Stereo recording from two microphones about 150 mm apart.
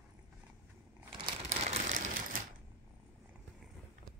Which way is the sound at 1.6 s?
50° right (ahead or behind).